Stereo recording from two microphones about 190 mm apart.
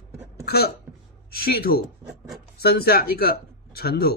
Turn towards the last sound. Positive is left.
turn(degrees=55)  # may be behind; listen again after turning